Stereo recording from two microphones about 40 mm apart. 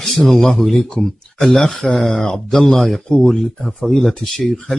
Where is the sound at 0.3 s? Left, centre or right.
Centre.